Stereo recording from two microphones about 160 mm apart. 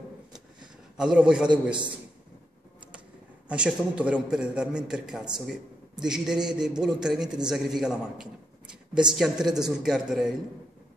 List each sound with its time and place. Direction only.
0.9 s a man's voice: 5° right (ahead or behind)
1.5 s a man's voice: 30° right (ahead or behind)
3.4 s a man's voice: 5° right (ahead or behind)